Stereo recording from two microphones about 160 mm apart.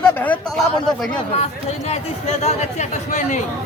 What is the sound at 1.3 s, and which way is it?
Speech, 40° left (ahead or behind).